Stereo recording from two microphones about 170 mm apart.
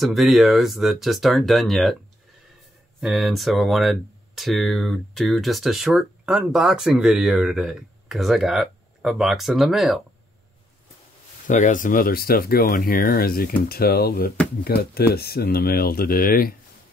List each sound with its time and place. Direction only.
0.0 s speech: centre (ahead or behind)
3.0 s speech: centre (ahead or behind)
11.4 s speech: 50° left (ahead or behind)